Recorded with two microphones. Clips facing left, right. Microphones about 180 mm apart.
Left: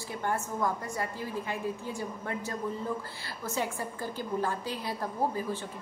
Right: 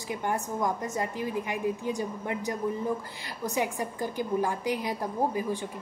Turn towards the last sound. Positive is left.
turn(degrees=-15)  # may be behind; listen again after turning